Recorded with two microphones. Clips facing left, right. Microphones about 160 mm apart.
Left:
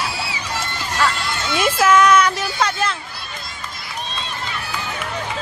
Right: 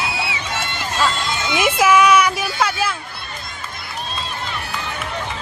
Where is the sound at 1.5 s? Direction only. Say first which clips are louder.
Even; 10° right (ahead or behind).